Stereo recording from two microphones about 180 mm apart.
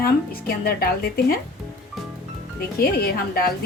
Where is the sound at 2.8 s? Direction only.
60° left (ahead or behind).